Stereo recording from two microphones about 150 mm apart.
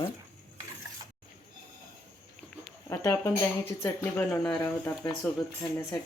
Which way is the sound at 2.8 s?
20° left (ahead or behind).